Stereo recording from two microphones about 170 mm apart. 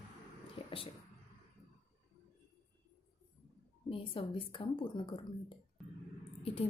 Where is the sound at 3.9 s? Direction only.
30° left (ahead or behind).